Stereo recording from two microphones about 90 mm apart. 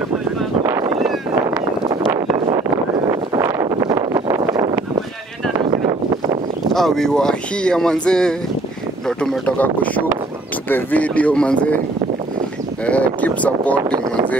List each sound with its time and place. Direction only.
3.6 s wind noise: 50° right (ahead or behind)
5.6 s a sound: 65° right (ahead or behind)
6.7 s speech: 5° left (ahead or behind)
9.6 s speech: 15° left (ahead or behind)
12.8 s speech: 15° left (ahead or behind)